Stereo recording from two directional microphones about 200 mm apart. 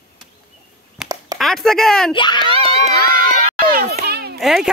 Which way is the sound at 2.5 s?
30° right (ahead or behind).